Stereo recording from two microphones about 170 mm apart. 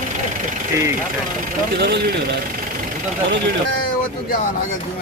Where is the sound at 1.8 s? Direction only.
70° right (ahead or behind).